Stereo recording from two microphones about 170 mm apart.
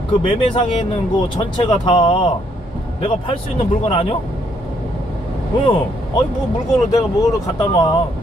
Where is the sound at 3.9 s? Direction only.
35° left (ahead or behind).